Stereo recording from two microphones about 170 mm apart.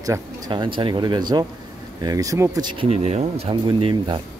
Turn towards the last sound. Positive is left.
turn(degrees=-25)  # may be behind; listen again after turning